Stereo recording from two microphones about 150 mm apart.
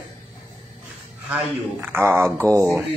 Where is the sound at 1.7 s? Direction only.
15° right (ahead or behind).